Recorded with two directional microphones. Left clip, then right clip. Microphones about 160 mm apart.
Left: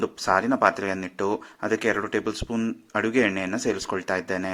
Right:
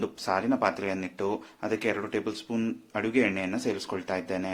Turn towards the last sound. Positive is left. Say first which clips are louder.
# left 5 dB
turn(degrees=40)  # may be behind; listen again after turning